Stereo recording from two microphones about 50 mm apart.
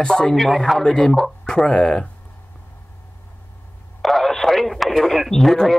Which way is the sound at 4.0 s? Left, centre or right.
Centre.